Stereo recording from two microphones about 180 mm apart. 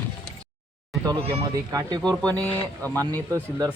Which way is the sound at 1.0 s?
20° right (ahead or behind).